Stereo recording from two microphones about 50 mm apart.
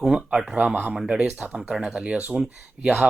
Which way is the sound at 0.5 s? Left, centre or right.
Right.